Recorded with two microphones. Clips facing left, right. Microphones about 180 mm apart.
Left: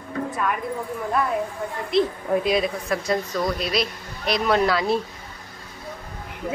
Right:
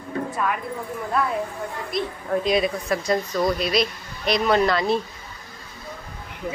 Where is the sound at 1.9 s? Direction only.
30° left (ahead or behind).